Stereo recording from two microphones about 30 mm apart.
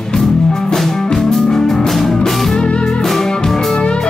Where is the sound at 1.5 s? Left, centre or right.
Centre.